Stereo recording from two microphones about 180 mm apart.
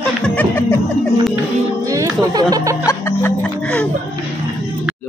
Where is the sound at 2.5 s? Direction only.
15° right (ahead or behind).